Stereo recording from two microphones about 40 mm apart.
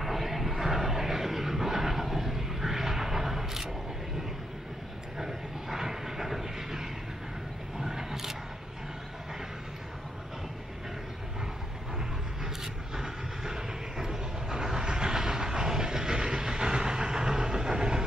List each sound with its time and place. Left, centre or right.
0.0 s vehicle: centre
5.1 s vehicle: centre
12.9 s vehicle: centre